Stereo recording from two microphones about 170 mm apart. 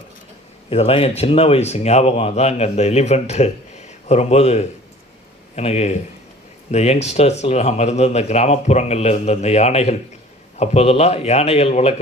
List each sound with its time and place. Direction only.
0.7 s speech: 35° left (ahead or behind)